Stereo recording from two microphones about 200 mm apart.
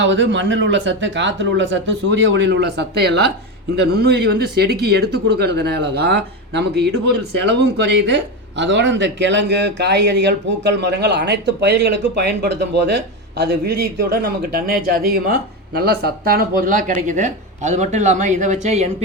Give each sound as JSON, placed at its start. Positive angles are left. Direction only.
{"t": 0.0, "sound": "a man's voice", "side_deg": -65}